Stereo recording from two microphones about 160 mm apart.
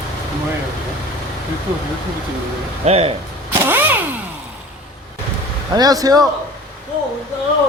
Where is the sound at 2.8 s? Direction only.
40° right (ahead or behind).